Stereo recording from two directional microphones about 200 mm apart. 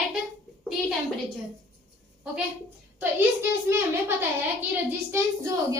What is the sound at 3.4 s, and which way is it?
Speech, 10° right (ahead or behind).